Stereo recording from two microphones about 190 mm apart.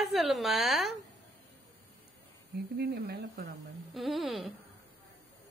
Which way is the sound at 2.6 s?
60° right (ahead or behind).